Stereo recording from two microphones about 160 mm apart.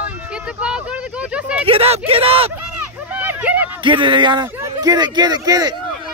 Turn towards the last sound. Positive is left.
turn(degrees=-25)  # may be behind; listen again after turning